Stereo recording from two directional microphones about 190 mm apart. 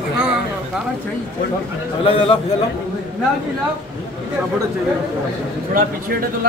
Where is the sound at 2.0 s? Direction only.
30° left (ahead or behind).